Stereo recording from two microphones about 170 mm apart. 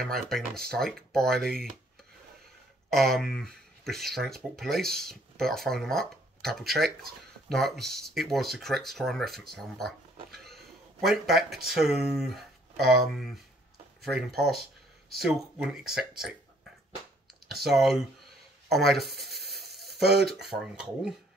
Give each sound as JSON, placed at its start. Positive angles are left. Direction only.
{"t": 0.0, "sound": "speech", "side_deg": 0}
{"t": 2.9, "sound": "speech", "side_deg": 0}
{"t": 17.5, "sound": "speech", "side_deg": 0}
{"t": 18.7, "sound": "a sound", "side_deg": 0}
{"t": 20.4, "sound": "speech", "side_deg": 0}